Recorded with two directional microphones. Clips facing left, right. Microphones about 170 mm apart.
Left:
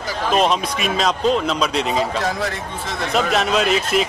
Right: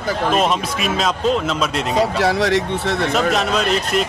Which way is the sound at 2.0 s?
75° right (ahead or behind).